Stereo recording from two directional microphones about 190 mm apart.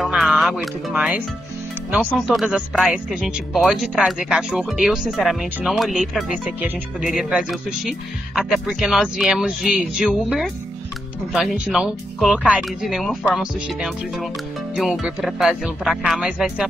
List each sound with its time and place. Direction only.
0.0 s music: centre (ahead or behind)
2.2 s speech: 5° right (ahead or behind)